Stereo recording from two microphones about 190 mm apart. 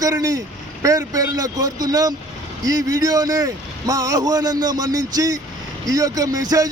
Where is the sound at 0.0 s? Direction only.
20° right (ahead or behind).